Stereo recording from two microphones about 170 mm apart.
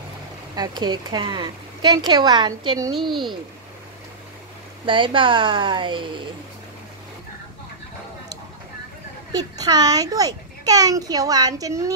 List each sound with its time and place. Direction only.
0.6 s a child's voice: 25° right (ahead or behind)
3.0 s speech: centre (ahead or behind)
4.8 s a child's voice: 30° right (ahead or behind)
9.3 s a child's voice: 20° right (ahead or behind)